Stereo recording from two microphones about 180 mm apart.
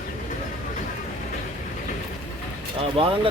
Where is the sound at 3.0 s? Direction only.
30° right (ahead or behind).